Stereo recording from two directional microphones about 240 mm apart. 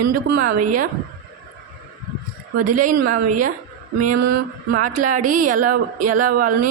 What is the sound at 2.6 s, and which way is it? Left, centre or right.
Speech, right.